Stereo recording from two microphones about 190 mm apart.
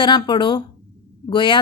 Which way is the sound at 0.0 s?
25° left (ahead or behind).